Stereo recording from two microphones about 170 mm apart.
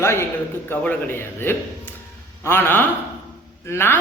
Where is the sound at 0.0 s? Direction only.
15° left (ahead or behind).